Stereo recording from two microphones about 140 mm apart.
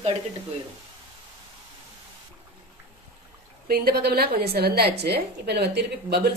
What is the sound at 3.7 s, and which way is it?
A woman's voice, 90° right.